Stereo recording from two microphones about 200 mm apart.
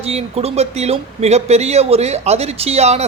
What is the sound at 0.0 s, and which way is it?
Speech, 30° right (ahead or behind).